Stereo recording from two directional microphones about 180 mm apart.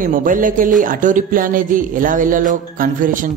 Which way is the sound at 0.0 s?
50° right (ahead or behind).